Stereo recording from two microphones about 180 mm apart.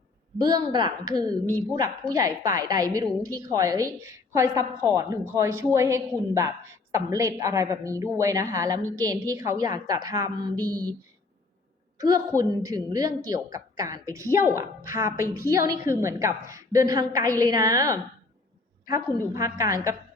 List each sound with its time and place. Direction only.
0.3 s a woman's voice: 20° right (ahead or behind)
11.9 s a woman's voice: 20° right (ahead or behind)